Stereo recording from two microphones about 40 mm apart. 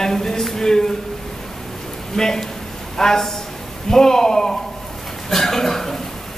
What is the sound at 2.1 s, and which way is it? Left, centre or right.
Speech, centre.